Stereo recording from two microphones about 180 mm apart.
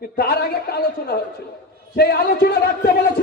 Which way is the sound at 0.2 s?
60° left (ahead or behind).